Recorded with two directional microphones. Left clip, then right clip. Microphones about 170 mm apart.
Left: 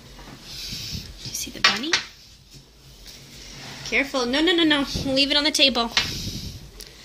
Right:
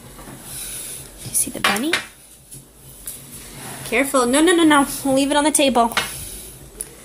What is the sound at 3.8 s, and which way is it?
A woman's voice, 5° right (ahead or behind).